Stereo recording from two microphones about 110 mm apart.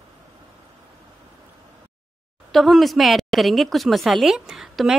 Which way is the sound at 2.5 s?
Centre (ahead or behind).